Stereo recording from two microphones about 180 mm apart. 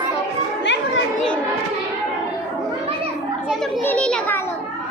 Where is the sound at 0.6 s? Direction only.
75° left (ahead or behind).